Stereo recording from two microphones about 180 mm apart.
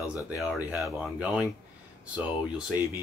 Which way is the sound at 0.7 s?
5° right (ahead or behind).